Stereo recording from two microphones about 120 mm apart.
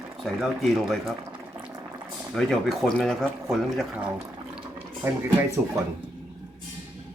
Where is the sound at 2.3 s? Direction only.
5° left (ahead or behind).